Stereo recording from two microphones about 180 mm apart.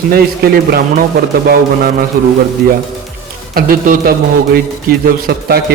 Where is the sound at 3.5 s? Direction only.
55° right (ahead or behind).